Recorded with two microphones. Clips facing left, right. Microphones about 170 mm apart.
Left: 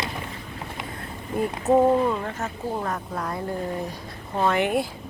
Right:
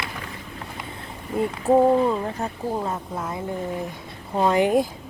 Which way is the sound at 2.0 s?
30° right (ahead or behind).